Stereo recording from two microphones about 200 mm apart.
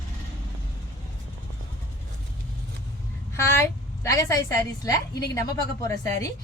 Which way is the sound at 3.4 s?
15° left (ahead or behind).